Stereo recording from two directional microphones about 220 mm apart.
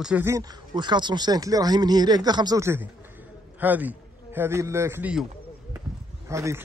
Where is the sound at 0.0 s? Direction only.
10° right (ahead or behind).